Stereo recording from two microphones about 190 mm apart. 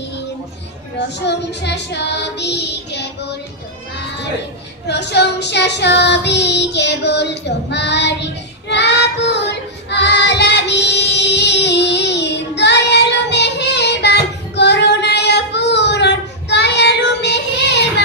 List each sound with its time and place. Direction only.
1.2 s child singing: 65° left (ahead or behind)
4.8 s child singing: 65° left (ahead or behind)